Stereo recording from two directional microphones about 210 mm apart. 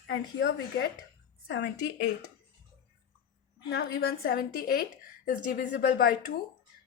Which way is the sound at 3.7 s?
50° left (ahead or behind).